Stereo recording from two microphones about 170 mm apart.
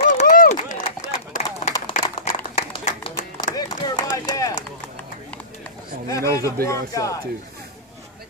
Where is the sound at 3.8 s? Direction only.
20° left (ahead or behind).